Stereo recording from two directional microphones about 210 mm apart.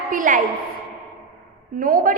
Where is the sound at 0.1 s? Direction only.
40° right (ahead or behind).